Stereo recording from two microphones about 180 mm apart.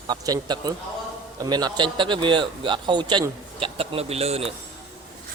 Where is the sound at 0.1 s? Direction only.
25° right (ahead or behind).